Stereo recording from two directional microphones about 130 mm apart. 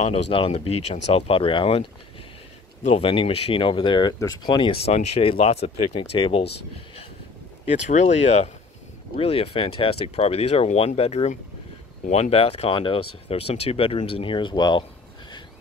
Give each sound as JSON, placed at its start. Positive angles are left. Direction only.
{"t": 0.3, "sound": "speech", "side_deg": 50}
{"t": 3.0, "sound": "speech", "side_deg": 40}
{"t": 7.9, "sound": "speech", "side_deg": 55}